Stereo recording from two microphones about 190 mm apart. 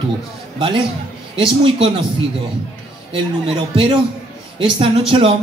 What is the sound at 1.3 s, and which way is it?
Speech, 25° right (ahead or behind).